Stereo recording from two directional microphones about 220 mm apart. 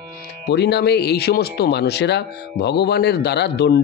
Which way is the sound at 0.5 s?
50° left (ahead or behind).